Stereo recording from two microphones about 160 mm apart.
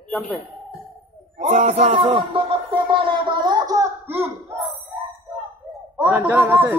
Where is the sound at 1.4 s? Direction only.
45° right (ahead or behind).